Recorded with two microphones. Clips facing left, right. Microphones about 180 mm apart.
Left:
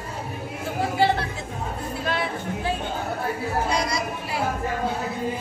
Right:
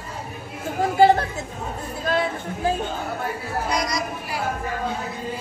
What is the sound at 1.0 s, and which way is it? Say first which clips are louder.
Chatter: right 7 dB; 45° right (ahead or behind).